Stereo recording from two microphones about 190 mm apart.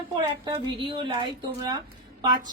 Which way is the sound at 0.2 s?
25° right (ahead or behind).